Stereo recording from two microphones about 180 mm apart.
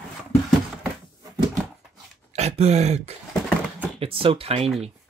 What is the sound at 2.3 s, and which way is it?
Speech, 35° right (ahead or behind).